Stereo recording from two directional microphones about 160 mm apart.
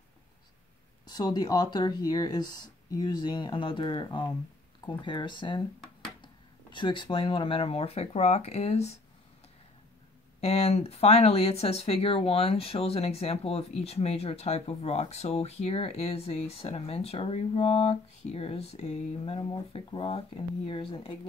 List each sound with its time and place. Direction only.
1.0 s speech: 25° left (ahead or behind); by 9.0 s 40° left (ahead or behind)
10.4 s speech: 40° left (ahead or behind)